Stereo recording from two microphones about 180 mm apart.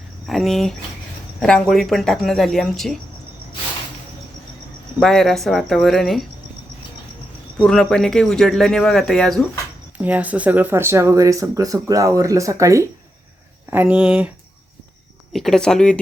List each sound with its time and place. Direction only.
0.3 s speech: centre (ahead or behind)
4.9 s speech: centre (ahead or behind)
7.6 s speech: 5° left (ahead or behind)
10.0 s speech: 10° right (ahead or behind)
15.3 s speech: centre (ahead or behind)